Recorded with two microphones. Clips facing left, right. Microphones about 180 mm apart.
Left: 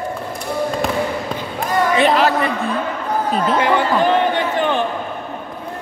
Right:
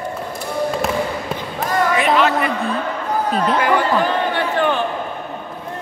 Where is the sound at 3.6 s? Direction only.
20° left (ahead or behind).